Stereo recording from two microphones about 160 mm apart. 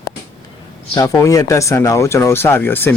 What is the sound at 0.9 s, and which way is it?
Speech, 20° left (ahead or behind).